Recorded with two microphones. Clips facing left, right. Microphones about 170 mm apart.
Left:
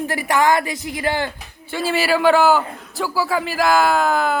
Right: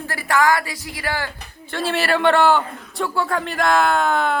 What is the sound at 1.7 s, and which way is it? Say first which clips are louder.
Speech: left 2 dB; centre (ahead or behind).